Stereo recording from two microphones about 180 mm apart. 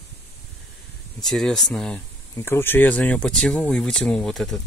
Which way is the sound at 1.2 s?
Centre (ahead or behind).